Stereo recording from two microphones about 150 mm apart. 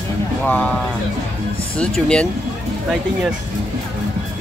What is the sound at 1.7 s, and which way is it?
Speech, 5° left (ahead or behind).